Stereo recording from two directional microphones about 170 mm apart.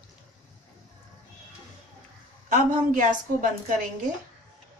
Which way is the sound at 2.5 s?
50° right (ahead or behind).